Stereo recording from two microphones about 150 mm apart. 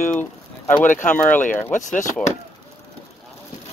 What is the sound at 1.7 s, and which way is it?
Speech, 55° left (ahead or behind).